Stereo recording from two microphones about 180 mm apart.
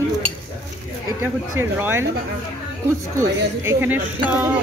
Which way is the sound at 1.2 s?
15° right (ahead or behind).